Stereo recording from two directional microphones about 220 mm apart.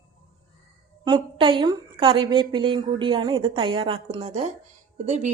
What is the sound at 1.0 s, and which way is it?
A woman's voice, 20° right (ahead or behind).